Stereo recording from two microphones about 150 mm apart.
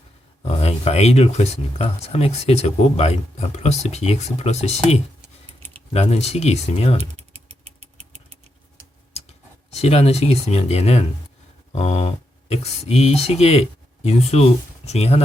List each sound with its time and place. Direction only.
0.4 s speech: 45° left (ahead or behind)
7.2 s typing: 45° right (ahead or behind)
9.7 s speech: 45° left (ahead or behind)